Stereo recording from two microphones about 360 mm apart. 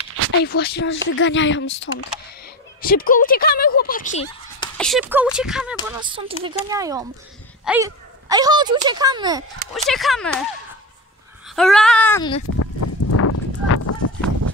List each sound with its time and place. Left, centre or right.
0.4 s speech: left
4.6 s speech: centre
5.9 s speech: centre
9.8 s female singing: centre
11.4 s female singing: centre
12.5 s a sound: left